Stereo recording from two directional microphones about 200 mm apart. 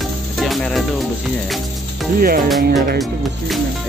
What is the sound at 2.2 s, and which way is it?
Speech, 45° right (ahead or behind).